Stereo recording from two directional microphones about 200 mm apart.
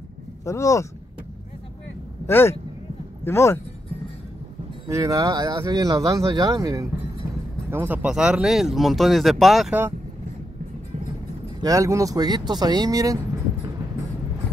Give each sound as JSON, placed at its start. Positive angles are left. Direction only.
{"t": 0.5, "sound": "speech", "side_deg": 15}
{"t": 2.2, "sound": "speech", "side_deg": 10}
{"t": 4.9, "sound": "speech", "side_deg": -15}
{"t": 11.6, "sound": "speech", "side_deg": -15}